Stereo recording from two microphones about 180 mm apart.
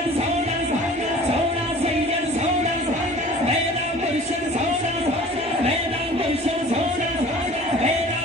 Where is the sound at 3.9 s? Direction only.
40° right (ahead or behind).